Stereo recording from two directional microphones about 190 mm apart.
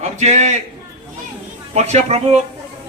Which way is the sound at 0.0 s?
35° right (ahead or behind).